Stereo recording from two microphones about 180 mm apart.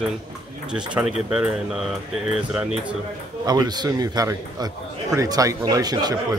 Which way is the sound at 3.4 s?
20° right (ahead or behind).